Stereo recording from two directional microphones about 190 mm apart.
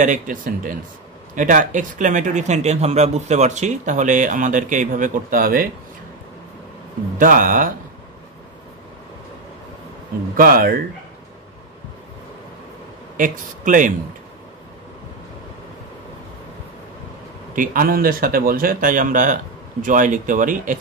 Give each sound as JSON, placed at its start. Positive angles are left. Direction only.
{"t": 0.0, "sound": "speech", "side_deg": -45}
{"t": 7.2, "sound": "speech", "side_deg": -45}
{"t": 10.3, "sound": "speech", "side_deg": -50}
{"t": 13.2, "sound": "speech", "side_deg": -45}
{"t": 17.6, "sound": "speech", "side_deg": -50}